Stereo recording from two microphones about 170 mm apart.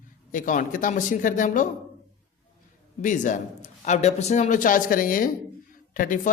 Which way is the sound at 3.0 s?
50° left (ahead or behind).